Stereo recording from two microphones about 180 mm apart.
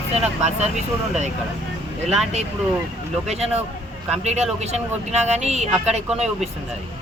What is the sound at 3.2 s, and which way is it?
Speech, 35° right (ahead or behind).